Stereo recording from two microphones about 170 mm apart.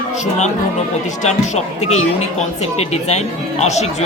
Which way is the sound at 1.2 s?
45° left (ahead or behind).